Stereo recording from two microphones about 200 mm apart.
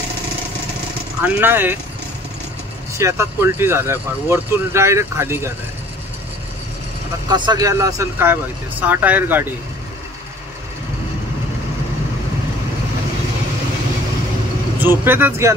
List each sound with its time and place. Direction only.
1.2 s speech: 10° right (ahead or behind)
3.0 s speech: 15° right (ahead or behind)
7.2 s speech: 20° right (ahead or behind)
14.8 s speech: 10° right (ahead or behind)